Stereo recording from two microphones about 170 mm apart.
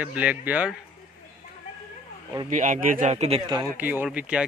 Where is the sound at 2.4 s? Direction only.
50° right (ahead or behind).